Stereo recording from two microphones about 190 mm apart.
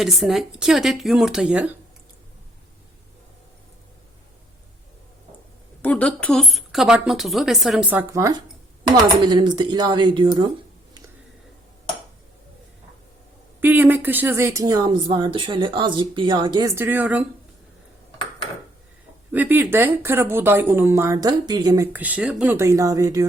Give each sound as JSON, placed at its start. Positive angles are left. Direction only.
{"t": 0.0, "sound": "a woman's voice", "side_deg": 0}
{"t": 5.8, "sound": "a woman's voice", "side_deg": 5}
{"t": 13.6, "sound": "speech", "side_deg": -10}
{"t": 16.7, "sound": "speech", "side_deg": -10}
{"t": 19.3, "sound": "speech", "side_deg": -10}
{"t": 21.9, "sound": "speech", "side_deg": -10}